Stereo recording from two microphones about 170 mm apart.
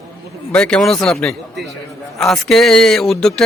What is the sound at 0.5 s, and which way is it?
Speech, 5° left (ahead or behind).